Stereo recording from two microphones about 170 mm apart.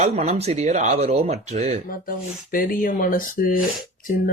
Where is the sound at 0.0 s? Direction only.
45° right (ahead or behind).